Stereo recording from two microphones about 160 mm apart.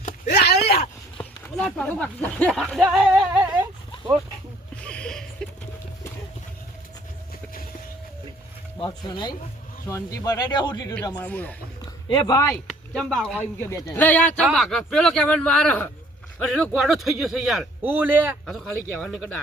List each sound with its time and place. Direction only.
0.3 s a sound: 90° left
1.2 s speech: 5° left (ahead or behind)
4.8 s a sound: 5° left (ahead or behind)
8.8 s speech: 30° left (ahead or behind)
9.8 s speech: 20° left (ahead or behind)
11.2 s speech: 10° left (ahead or behind)
12.0 s speech: 25° left (ahead or behind)
12.9 s speech: centre (ahead or behind)
13.4 s speech: 15° left (ahead or behind); by 18.3 s 10° right (ahead or behind)
18.4 s speech: centre (ahead or behind)